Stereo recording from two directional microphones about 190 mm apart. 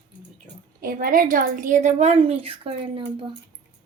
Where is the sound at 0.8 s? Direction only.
45° right (ahead or behind); by 3.0 s 30° right (ahead or behind).